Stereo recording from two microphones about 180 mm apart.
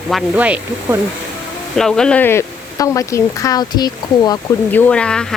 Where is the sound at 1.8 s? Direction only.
5° left (ahead or behind); by 4.4 s 20° left (ahead or behind).